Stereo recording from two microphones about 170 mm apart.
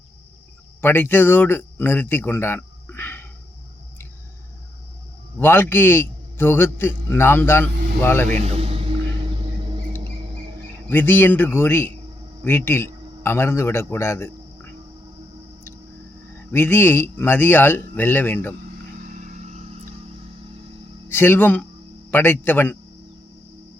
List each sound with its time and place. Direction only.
0.8 s speech: 10° left (ahead or behind)
5.4 s a man's voice: 15° left (ahead or behind)
8.3 s music: 40° right (ahead or behind)
10.0 s mouse: 35° right (ahead or behind)
10.8 s a man's voice: 10° left (ahead or behind)
16.5 s a man's voice: 15° left (ahead or behind)
19.0 s vehicle: 50° right (ahead or behind)
21.1 s a man's voice: 15° left (ahead or behind)